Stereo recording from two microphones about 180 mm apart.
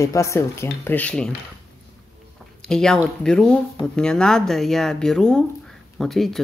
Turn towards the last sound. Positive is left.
turn(degrees=0)  # may be behind; listen again after turning